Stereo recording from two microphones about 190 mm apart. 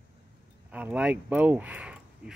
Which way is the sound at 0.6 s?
5° right (ahead or behind).